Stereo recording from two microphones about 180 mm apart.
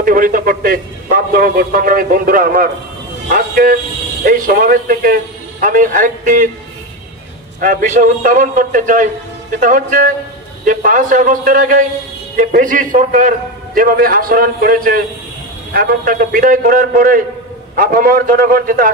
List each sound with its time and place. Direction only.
0.0 s a man's voice: 50° right (ahead or behind)
7.6 s a man's voice: 45° right (ahead or behind)